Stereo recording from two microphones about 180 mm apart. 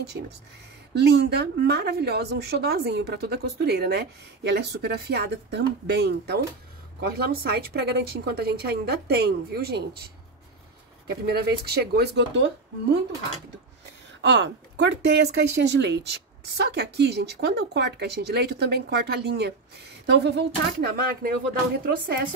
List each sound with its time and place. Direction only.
0.2 s speech: 90° right
0.9 s a woman's voice: 65° right (ahead or behind)
14.2 s a woman's voice: 75° right (ahead or behind); by 22.2 s 55° right (ahead or behind)